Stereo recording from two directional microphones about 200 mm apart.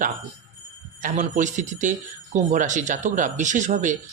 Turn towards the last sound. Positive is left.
turn(degrees=-40)  # may be behind; listen again after turning